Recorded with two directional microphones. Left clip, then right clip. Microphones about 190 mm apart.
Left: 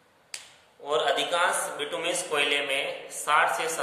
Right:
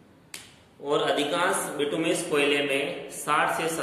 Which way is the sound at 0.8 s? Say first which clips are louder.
Right 1 dB; 25° left (ahead or behind).